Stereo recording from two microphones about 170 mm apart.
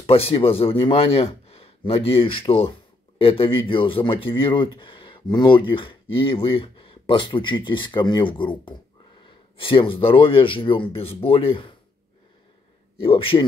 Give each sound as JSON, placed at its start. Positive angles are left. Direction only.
{"t": 0.0, "sound": "speech", "side_deg": 35}
{"t": 12.9, "sound": "a man's voice", "side_deg": 30}